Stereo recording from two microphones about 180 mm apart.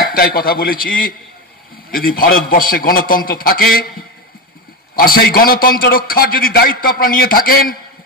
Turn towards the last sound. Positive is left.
turn(degrees=55)  # may be behind; listen again after turning